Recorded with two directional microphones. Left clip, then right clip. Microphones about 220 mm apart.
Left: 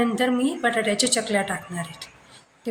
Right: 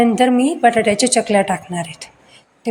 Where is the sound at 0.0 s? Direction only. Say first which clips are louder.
Right 8 dB; 30° right (ahead or behind).